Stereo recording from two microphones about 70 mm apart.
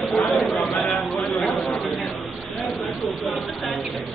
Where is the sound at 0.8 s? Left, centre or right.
Centre.